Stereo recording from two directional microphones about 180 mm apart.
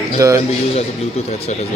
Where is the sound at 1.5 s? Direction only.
40° left (ahead or behind).